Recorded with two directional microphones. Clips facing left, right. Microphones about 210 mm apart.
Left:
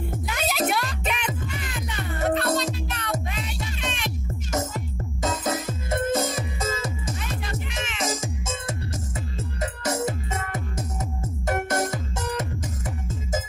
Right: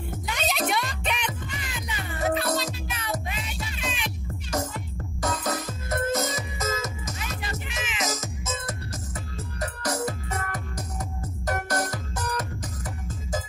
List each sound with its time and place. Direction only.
0.3 s music: 5° left (ahead or behind)
5.2 s music: 25° left (ahead or behind)